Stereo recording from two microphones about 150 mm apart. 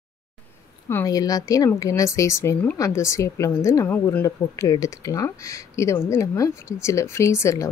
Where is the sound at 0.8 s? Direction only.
20° left (ahead or behind).